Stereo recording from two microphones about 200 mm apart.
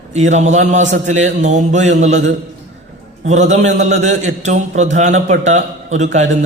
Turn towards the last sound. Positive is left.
turn(degrees=-35)  # may be behind; listen again after turning